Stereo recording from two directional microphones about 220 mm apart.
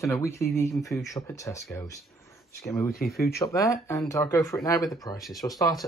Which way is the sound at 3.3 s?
15° left (ahead or behind).